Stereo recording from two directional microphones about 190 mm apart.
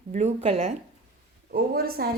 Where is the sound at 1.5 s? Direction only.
50° right (ahead or behind).